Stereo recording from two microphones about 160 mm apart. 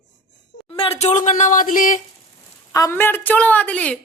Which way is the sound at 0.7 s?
35° left (ahead or behind).